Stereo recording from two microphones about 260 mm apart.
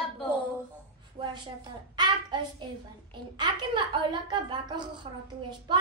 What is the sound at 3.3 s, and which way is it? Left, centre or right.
A woman's voice, centre.